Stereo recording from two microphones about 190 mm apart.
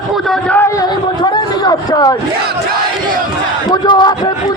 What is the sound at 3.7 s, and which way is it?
Speech, 25° left (ahead or behind).